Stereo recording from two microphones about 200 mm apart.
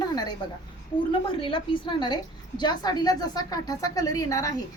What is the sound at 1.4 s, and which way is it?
A woman's voice, 25° left (ahead or behind).